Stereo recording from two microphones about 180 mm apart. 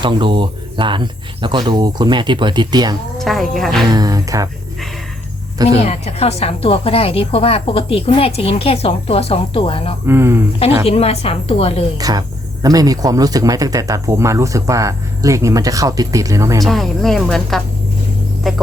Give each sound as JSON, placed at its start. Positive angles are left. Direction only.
{"t": 0.0, "sound": "speech", "side_deg": -25}
{"t": 3.2, "sound": "speech", "side_deg": 0}
{"t": 3.9, "sound": "speech", "side_deg": -20}
{"t": 5.8, "sound": "a woman's voice", "side_deg": 35}
{"t": 10.1, "sound": "speech", "side_deg": -15}
{"t": 10.8, "sound": "a woman's voice", "side_deg": 35}
{"t": 11.9, "sound": "speech", "side_deg": -20}
{"t": 16.6, "sound": "speech", "side_deg": 0}